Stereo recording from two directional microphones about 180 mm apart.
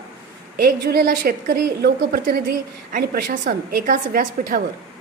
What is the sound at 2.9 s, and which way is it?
A woman's voice, 50° right (ahead or behind).